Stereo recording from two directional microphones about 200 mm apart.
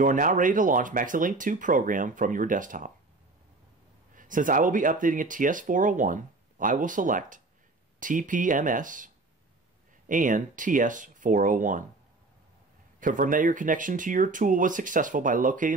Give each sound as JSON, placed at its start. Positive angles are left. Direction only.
{"t": 0.0, "sound": "speech", "side_deg": -40}
{"t": 4.1, "sound": "speech", "side_deg": -40}
{"t": 13.0, "sound": "speech", "side_deg": -40}